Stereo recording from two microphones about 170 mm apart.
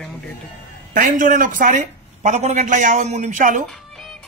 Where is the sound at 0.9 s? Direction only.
50° right (ahead or behind).